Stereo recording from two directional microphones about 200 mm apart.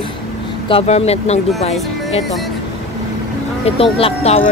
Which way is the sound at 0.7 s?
30° left (ahead or behind).